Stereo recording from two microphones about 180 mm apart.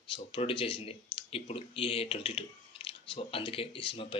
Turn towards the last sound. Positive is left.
turn(degrees=30)  # may be behind; listen again after turning